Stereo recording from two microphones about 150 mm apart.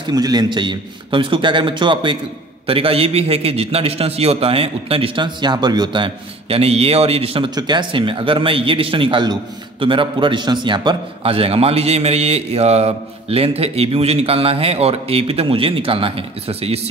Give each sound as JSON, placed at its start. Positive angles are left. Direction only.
{"t": 0.0, "sound": "a man's voice", "side_deg": -25}